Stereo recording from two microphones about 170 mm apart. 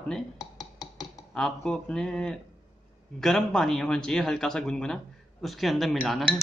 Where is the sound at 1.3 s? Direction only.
5° left (ahead or behind).